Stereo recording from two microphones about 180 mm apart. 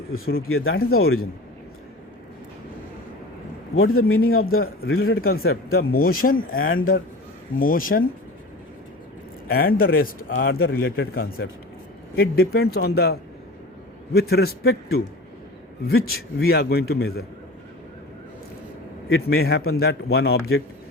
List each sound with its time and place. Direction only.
0.3 s speech: 90° left
4.0 s a man's voice: 55° left (ahead or behind)
9.5 s a man's voice: 55° left (ahead or behind)
19.0 s a man's voice: 60° left (ahead or behind)